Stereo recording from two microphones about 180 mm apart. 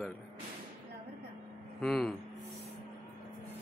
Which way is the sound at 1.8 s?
5° left (ahead or behind).